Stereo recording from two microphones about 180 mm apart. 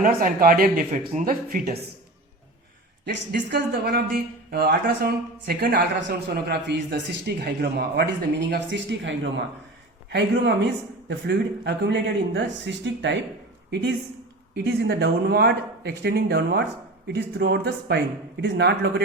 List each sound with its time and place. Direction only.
0.0 s speech: 50° right (ahead or behind)
3.5 s speech: 65° right (ahead or behind); by 13.1 s 80° right
14.5 s speech: 65° right (ahead or behind)